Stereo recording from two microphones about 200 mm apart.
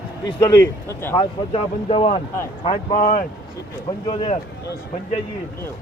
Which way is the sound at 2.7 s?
40° left (ahead or behind).